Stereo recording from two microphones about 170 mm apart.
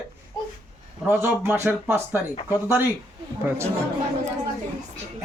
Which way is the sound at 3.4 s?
15° right (ahead or behind).